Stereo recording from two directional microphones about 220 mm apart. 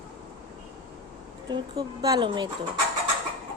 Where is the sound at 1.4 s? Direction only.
20° right (ahead or behind).